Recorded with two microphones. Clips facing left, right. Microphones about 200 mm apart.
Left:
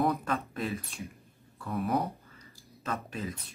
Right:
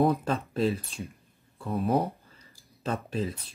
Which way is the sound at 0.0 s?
30° right (ahead or behind).